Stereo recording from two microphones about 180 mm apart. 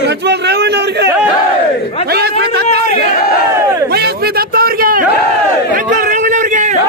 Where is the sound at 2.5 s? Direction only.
65° right (ahead or behind).